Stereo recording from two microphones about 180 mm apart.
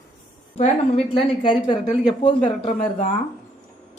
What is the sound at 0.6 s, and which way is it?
A woman's voice, 30° left (ahead or behind).